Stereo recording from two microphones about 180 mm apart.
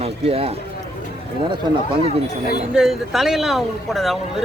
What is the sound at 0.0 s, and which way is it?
Run, 35° right (ahead or behind).